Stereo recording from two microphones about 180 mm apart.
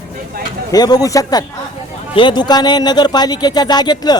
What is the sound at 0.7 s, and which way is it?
Speech, 20° left (ahead or behind).